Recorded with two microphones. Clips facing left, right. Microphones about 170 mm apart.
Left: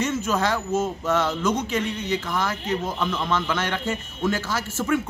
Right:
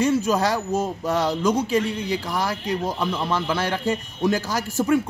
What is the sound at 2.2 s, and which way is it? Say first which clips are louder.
A man's voice: right 1 dB; 10° right (ahead or behind).